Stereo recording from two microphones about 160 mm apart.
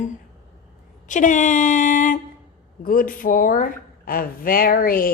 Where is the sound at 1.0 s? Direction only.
50° left (ahead or behind).